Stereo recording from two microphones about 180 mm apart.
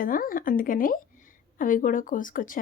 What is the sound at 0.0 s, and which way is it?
A woman's voice, 50° left (ahead or behind).